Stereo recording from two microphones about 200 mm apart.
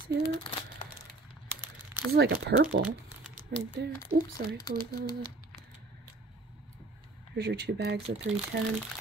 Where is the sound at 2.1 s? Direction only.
50° right (ahead or behind).